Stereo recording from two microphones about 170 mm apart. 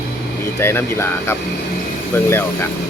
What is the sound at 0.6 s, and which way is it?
Speech, 15° left (ahead or behind).